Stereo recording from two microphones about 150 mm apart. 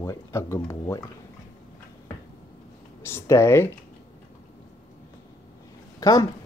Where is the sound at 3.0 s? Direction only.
15° left (ahead or behind).